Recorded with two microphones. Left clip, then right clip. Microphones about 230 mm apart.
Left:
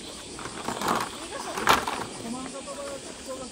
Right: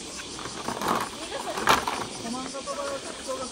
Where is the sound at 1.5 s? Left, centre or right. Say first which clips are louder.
Even; centre.